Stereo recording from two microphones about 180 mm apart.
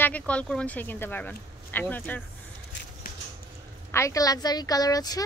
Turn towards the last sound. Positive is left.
turn(degrees=20)  # may be behind; listen again after turning